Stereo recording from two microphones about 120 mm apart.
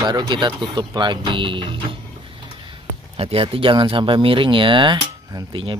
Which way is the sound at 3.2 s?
55° right (ahead or behind).